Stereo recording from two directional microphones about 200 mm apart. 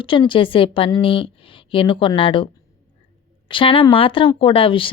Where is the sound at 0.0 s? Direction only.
25° left (ahead or behind).